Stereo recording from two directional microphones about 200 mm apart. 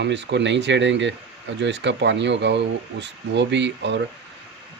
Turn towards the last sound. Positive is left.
turn(degrees=-60)  # may be behind; listen again after turning